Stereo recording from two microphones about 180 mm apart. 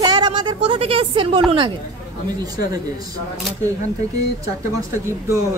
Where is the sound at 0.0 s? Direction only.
25° right (ahead or behind).